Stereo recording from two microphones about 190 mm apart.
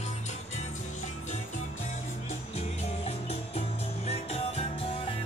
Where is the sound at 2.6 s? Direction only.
30° left (ahead or behind).